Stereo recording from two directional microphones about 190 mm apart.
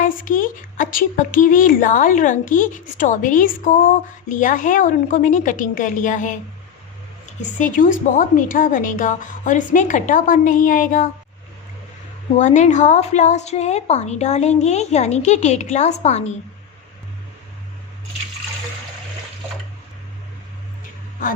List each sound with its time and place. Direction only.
0.0 s speech: 45° left (ahead or behind)
12.4 s a woman's voice: 40° left (ahead or behind)